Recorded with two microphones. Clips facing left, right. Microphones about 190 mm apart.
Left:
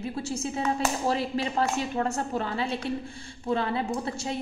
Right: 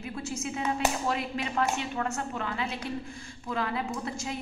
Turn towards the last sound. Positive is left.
turn(degrees=30)  # may be behind; listen again after turning